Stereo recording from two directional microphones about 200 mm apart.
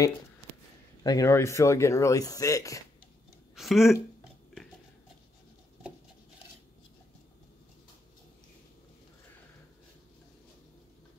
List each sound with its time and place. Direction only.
1.0 s speech: 15° left (ahead or behind)
3.5 s speech: centre (ahead or behind)